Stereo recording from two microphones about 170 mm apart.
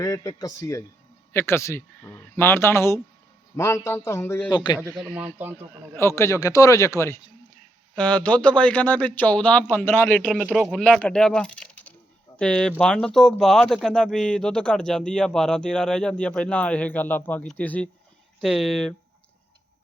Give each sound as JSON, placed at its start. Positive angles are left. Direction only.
{"t": 0.0, "sound": "speech", "side_deg": 20}
{"t": 4.5, "sound": "speech", "side_deg": 25}
{"t": 5.1, "sound": "speech", "side_deg": -10}
{"t": 5.9, "sound": "speech", "side_deg": 15}
{"t": 7.9, "sound": "speech", "side_deg": 5}
{"t": 10.2, "sound": "speech", "side_deg": 0}